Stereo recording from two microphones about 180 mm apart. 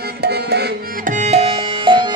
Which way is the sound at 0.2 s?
65° right (ahead or behind).